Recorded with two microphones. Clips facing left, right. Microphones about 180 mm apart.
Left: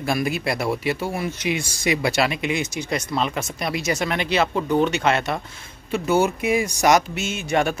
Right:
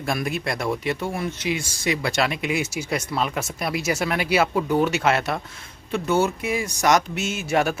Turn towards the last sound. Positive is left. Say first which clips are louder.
# even
turn(degrees=-5)  # may be behind; listen again after turning